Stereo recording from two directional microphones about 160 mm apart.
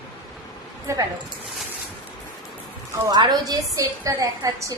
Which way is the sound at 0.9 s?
15° right (ahead or behind).